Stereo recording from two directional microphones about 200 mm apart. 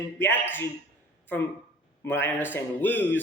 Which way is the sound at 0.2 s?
10° left (ahead or behind).